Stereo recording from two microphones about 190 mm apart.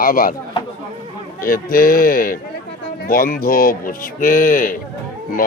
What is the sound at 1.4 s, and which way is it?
Speech, 50° left (ahead or behind).